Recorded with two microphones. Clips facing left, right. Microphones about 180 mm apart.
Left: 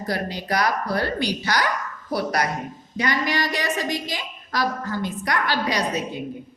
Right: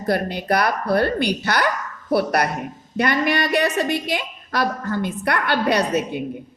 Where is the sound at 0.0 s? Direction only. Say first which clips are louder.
Right 5 dB; 55° right (ahead or behind).